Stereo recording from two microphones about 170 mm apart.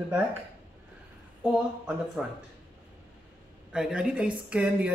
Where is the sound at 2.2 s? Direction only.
5° right (ahead or behind).